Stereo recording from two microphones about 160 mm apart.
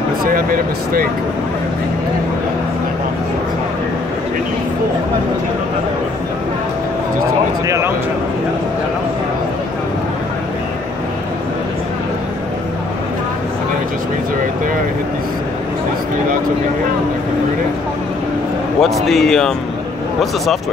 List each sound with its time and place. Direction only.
0.2 s speech: 60° right (ahead or behind)
7.6 s speech: 20° right (ahead or behind)
18.8 s speech: centre (ahead or behind)